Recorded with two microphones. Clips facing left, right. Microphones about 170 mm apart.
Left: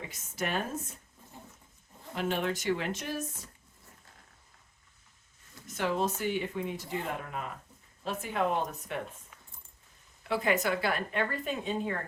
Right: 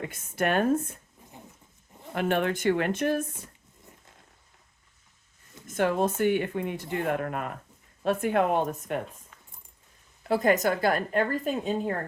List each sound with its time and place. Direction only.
0.0 s speech: 55° right (ahead or behind)
2.1 s speech: 60° right (ahead or behind)
5.6 s speech: 55° right (ahead or behind)
10.2 s a woman's voice: 40° right (ahead or behind)